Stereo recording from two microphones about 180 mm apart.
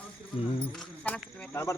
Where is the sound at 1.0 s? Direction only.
10° left (ahead or behind).